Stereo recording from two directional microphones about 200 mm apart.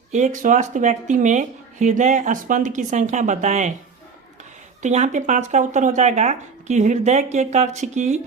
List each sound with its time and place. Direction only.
0.1 s speech: 40° right (ahead or behind)
4.8 s speech: 35° right (ahead or behind)